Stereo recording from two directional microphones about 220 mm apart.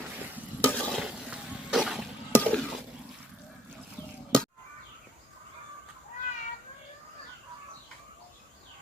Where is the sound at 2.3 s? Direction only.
5° left (ahead or behind).